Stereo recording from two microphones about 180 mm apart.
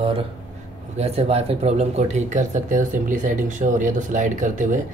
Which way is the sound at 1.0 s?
35° right (ahead or behind).